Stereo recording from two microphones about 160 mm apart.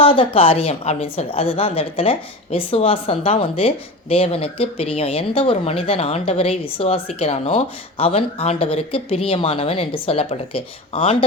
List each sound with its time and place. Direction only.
0.0 s a woman's voice: 35° left (ahead or behind)